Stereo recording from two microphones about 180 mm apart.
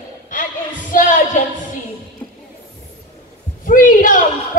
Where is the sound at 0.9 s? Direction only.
45° left (ahead or behind).